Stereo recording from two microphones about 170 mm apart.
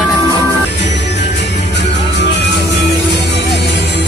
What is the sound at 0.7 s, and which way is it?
Music, 90° left.